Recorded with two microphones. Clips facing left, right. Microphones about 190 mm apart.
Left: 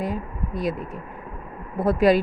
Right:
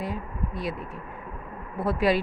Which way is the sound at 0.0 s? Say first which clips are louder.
Left 4 dB; 45° left (ahead or behind).